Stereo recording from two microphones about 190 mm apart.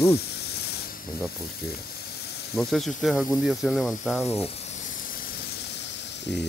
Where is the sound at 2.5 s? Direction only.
Centre (ahead or behind).